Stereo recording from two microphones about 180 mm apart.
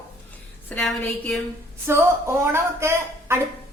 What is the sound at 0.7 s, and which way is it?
Speech, 10° left (ahead or behind).